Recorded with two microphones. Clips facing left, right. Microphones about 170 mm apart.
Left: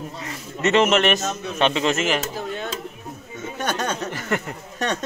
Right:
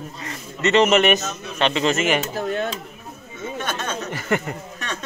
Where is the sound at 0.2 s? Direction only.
5° left (ahead or behind).